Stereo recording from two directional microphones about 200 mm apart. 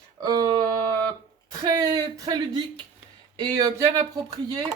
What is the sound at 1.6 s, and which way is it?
A woman's voice, 20° right (ahead or behind).